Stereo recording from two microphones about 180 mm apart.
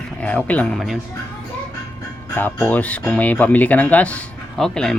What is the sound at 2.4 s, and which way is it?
Speech, 10° left (ahead or behind).